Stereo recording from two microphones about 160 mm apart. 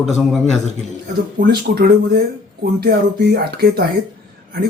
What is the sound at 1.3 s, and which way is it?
Speech, 70° right (ahead or behind).